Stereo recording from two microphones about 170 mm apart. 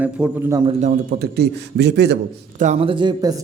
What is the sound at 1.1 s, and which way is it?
A man's voice, 70° right (ahead or behind).